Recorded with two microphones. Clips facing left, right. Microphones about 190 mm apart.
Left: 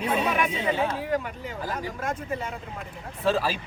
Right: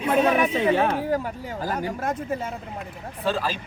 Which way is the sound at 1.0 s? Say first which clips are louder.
Right 3 dB; 40° right (ahead or behind).